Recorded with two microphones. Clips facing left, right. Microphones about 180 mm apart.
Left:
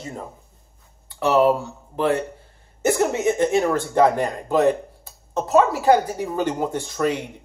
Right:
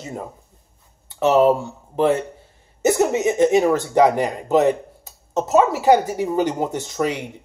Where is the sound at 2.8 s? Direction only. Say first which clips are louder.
Right 3 dB; 20° right (ahead or behind).